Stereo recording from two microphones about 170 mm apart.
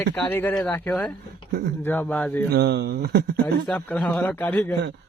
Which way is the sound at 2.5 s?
70° right (ahead or behind).